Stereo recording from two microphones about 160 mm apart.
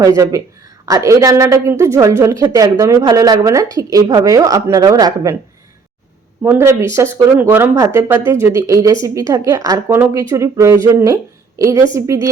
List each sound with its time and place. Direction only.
0.0 s a woman's voice: 20° right (ahead or behind)
6.4 s a woman's voice: 15° right (ahead or behind)